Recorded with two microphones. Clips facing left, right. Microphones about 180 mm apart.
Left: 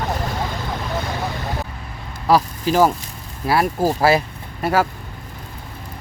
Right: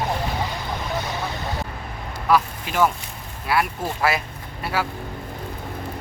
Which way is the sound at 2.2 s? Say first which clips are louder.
Left 4 dB; 35° left (ahead or behind).